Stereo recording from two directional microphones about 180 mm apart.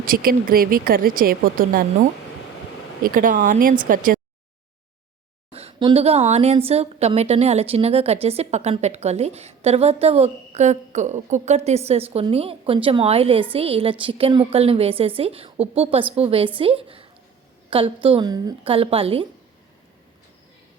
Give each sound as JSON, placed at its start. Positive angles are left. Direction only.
{"t": 0.0, "sound": "speech", "side_deg": -50}
{"t": 3.0, "sound": "speech", "side_deg": -50}
{"t": 5.5, "sound": "a woman's voice", "side_deg": -35}